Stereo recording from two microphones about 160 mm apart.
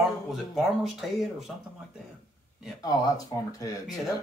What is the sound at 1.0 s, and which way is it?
Speech, centre (ahead or behind).